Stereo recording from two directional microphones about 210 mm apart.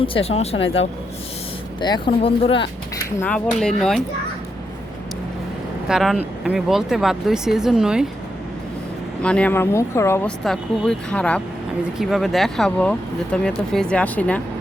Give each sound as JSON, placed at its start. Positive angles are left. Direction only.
{"t": 0.0, "sound": "speech", "side_deg": 25}
{"t": 1.8, "sound": "speech", "side_deg": 25}
{"t": 3.2, "sound": "speech", "side_deg": 5}
{"t": 5.9, "sound": "speech", "side_deg": 0}
{"t": 9.2, "sound": "speech", "side_deg": 5}